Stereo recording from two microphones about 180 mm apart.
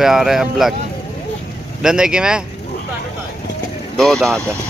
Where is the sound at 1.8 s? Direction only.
5° right (ahead or behind).